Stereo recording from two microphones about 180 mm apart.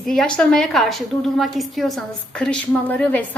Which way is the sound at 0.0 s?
Centre (ahead or behind).